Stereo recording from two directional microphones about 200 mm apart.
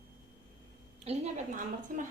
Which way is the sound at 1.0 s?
35° right (ahead or behind).